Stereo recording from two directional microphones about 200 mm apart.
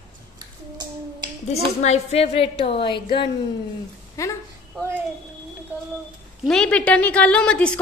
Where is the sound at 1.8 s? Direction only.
30° left (ahead or behind); by 4.3 s 15° left (ahead or behind).